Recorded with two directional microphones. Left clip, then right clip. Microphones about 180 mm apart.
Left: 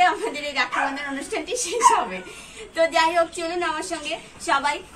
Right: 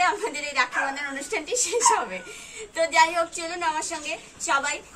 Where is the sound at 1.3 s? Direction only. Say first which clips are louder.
Right 1 dB; 10° right (ahead or behind).